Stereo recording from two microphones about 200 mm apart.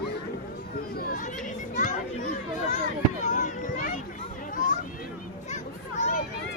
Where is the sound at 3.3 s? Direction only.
40° left (ahead or behind).